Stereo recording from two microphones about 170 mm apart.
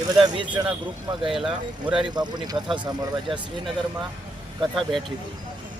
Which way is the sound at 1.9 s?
25° right (ahead or behind).